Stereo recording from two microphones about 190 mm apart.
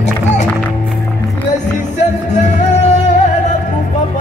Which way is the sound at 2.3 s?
40° left (ahead or behind).